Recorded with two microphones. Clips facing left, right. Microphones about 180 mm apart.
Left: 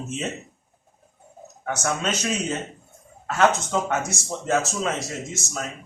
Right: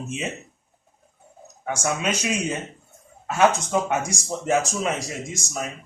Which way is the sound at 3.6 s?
15° right (ahead or behind).